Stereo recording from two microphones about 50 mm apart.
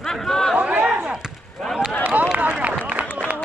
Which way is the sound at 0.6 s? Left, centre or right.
Right.